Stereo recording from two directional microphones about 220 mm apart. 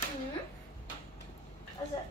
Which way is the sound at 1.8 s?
20° left (ahead or behind).